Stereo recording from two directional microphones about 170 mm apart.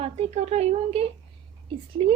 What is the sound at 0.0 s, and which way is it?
A woman's voice, 40° right (ahead or behind).